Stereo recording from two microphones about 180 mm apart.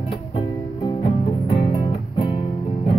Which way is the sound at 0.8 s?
30° left (ahead or behind).